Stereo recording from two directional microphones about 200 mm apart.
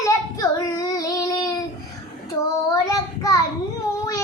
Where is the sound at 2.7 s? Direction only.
15° left (ahead or behind).